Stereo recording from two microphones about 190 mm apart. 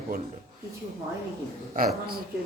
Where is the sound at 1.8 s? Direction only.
50° right (ahead or behind).